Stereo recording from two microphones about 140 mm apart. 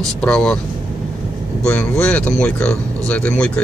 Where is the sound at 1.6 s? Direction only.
10° left (ahead or behind).